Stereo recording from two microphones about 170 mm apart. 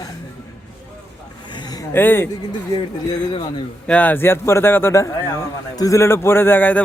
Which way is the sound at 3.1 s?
25° left (ahead or behind).